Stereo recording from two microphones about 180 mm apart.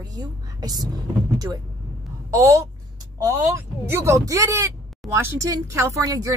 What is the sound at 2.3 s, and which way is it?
A woman's voice, 20° right (ahead or behind).